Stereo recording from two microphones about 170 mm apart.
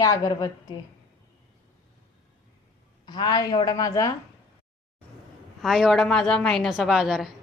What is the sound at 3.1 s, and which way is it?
A woman's voice, 25° left (ahead or behind).